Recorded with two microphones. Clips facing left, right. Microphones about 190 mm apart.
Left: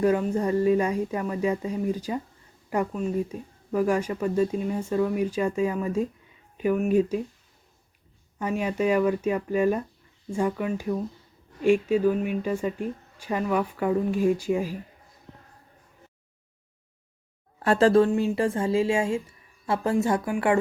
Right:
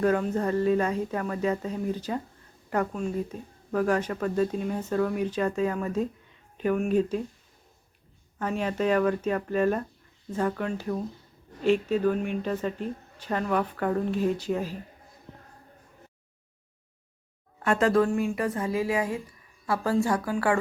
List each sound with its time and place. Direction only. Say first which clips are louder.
0.0 s a woman's voice: left 2 dB; 10° left (ahead or behind)
8.4 s a woman's voice: left 2 dB; 10° left (ahead or behind)
17.7 s a woman's voice: left 4 dB; 30° left (ahead or behind)